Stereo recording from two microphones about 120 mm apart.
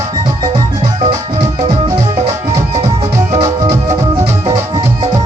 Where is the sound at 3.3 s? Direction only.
30° right (ahead or behind).